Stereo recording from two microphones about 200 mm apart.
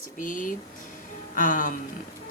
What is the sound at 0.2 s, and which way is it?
Speech, 40° left (ahead or behind).